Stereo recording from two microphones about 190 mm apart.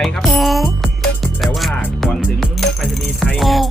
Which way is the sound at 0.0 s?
Centre (ahead or behind).